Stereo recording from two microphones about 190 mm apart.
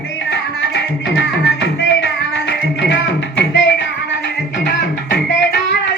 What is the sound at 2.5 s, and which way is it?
Music, 70° left (ahead or behind).